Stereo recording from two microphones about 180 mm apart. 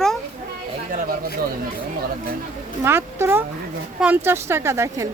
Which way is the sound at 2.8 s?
15° right (ahead or behind).